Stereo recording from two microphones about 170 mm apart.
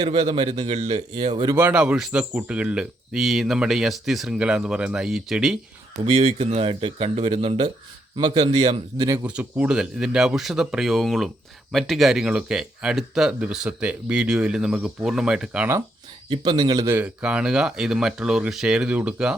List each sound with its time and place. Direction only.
0.0 s speech: 35° right (ahead or behind)
1.5 s speech: 10° right (ahead or behind)
6.1 s a man's voice: 35° right (ahead or behind)
9.2 s speech: 10° right (ahead or behind)
16.3 s speech: 30° right (ahead or behind); by 19.3 s 5° right (ahead or behind)